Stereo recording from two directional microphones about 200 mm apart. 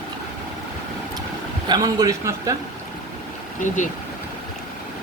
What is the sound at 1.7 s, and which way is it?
Speech, 20° right (ahead or behind).